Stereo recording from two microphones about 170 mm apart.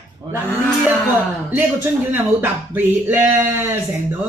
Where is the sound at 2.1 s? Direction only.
10° right (ahead or behind).